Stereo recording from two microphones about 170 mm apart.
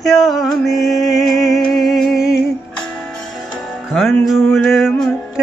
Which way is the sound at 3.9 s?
Centre (ahead or behind).